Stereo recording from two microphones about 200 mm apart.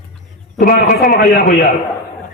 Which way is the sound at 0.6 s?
45° left (ahead or behind).